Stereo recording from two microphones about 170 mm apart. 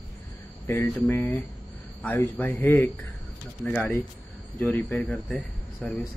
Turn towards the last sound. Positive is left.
turn(degrees=5)  # may be behind; listen again after turning